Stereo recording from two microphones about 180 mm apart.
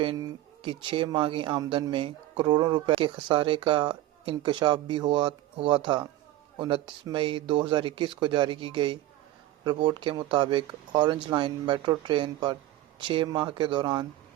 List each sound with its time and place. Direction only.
0.0 s speech: 25° right (ahead or behind)